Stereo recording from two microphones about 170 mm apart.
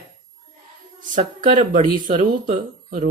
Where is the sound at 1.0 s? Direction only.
50° right (ahead or behind).